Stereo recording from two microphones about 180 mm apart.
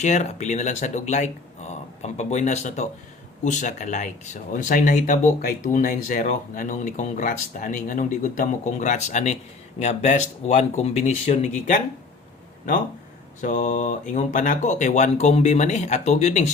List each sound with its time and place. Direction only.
0.0 s speech: 40° left (ahead or behind)
13.4 s speech: 45° left (ahead or behind)